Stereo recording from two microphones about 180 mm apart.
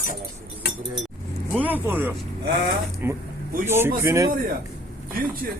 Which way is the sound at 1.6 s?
10° right (ahead or behind).